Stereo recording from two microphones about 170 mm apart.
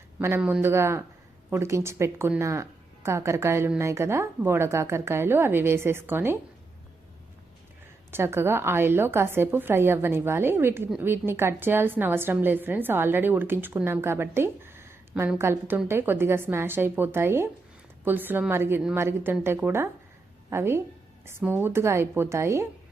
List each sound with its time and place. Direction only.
0.2 s a woman's voice: 10° right (ahead or behind)
8.1 s a woman's voice: 15° right (ahead or behind)